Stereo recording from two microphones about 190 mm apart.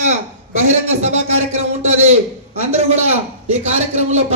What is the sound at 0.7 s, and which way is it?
A man's voice, 35° right (ahead or behind).